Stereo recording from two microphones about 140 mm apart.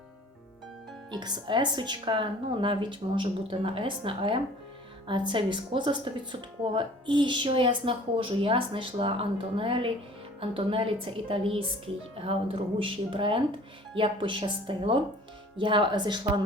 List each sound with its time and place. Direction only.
1.2 s speech: 35° right (ahead or behind)
12.8 s speech: 40° right (ahead or behind)